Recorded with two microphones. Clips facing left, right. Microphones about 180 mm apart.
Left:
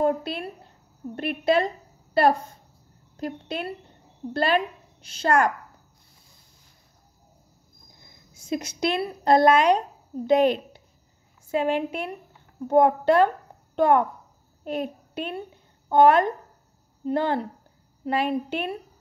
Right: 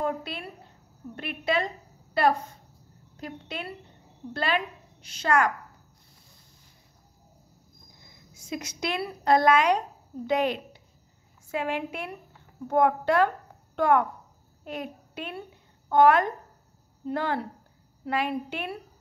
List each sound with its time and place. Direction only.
0.0 s a woman's voice: 40° left (ahead or behind)
3.2 s a woman's voice: 40° left (ahead or behind)
8.5 s a woman's voice: 30° left (ahead or behind)